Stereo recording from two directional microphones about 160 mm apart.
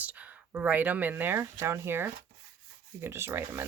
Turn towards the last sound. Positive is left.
turn(degrees=-15)  # may be behind; listen again after turning